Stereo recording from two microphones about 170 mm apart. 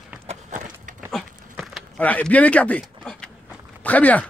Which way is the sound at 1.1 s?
Centre (ahead or behind).